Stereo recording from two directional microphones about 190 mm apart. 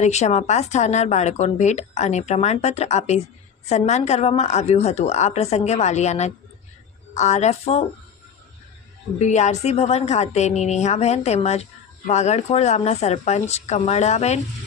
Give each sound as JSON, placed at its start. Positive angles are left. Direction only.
{"t": 0.0, "sound": "speech", "side_deg": 35}
{"t": 9.1, "sound": "speech", "side_deg": 40}